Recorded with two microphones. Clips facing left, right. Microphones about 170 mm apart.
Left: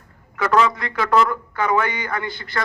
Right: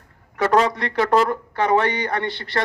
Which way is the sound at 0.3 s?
35° right (ahead or behind).